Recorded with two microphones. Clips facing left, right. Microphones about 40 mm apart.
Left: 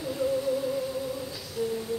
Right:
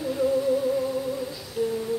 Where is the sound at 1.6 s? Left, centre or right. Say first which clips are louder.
Right 4 dB; right.